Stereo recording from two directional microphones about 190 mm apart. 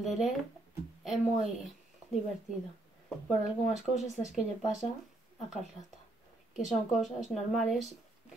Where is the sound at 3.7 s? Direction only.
Centre (ahead or behind).